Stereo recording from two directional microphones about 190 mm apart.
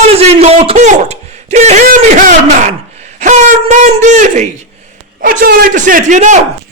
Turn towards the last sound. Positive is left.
turn(degrees=-40)  # may be behind; listen again after turning